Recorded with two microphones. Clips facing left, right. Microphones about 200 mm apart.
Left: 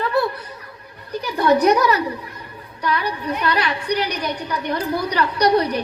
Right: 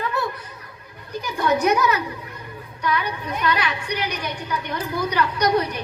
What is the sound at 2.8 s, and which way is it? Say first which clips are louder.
A woman's voice: left 2 dB; 35° left (ahead or behind).